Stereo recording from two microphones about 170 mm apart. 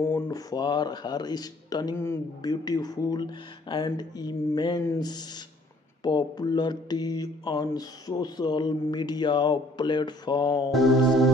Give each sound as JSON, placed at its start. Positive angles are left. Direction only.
{"t": 0.0, "sound": "speech", "side_deg": 15}
{"t": 10.7, "sound": "music", "side_deg": 0}